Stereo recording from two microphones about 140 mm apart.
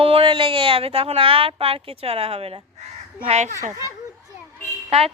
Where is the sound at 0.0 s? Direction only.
40° right (ahead or behind).